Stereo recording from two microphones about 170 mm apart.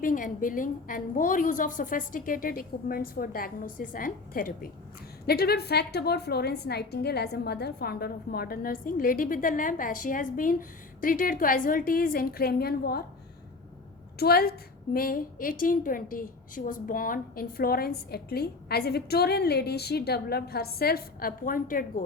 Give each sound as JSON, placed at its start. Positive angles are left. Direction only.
{"t": 0.0, "sound": "a woman's voice", "side_deg": 55}
{"t": 5.2, "sound": "a woman's voice", "side_deg": 70}
{"t": 14.2, "sound": "a woman's voice", "side_deg": 65}